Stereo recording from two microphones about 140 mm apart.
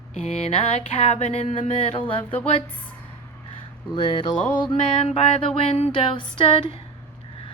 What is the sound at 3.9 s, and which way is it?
Music, 40° left (ahead or behind).